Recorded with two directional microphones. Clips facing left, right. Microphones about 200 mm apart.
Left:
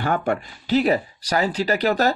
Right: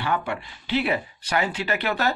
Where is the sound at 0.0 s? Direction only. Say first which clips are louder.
Left 5 dB; 45° left (ahead or behind).